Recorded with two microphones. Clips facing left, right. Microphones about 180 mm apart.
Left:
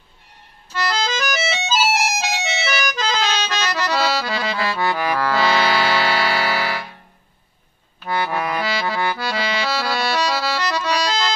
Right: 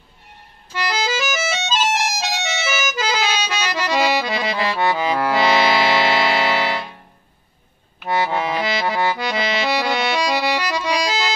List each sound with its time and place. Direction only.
0.7 s music: 10° right (ahead or behind)
8.0 s accordion: 20° right (ahead or behind)